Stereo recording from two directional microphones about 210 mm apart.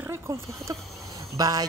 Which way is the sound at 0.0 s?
15° right (ahead or behind).